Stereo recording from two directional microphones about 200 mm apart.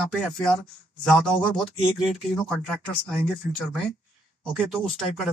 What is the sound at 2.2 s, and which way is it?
Speech, centre (ahead or behind).